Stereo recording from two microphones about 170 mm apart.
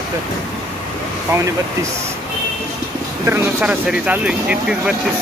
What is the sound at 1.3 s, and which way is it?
Speech, 15° right (ahead or behind).